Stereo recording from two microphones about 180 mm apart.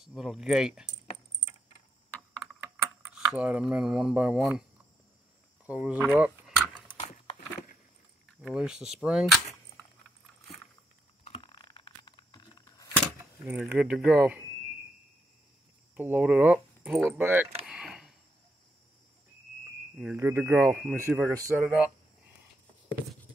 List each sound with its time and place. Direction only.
0.0 s speech: centre (ahead or behind)
3.1 s speech: 5° right (ahead or behind)
5.7 s speech: 5° right (ahead or behind)
8.4 s speech: 5° right (ahead or behind)
11.2 s a sound: 30° left (ahead or behind)
13.2 s speech: 10° right (ahead or behind)
16.0 s speech: 10° right (ahead or behind)
17.6 s a sound: 5° right (ahead or behind)
20.0 s speech: 10° right (ahead or behind)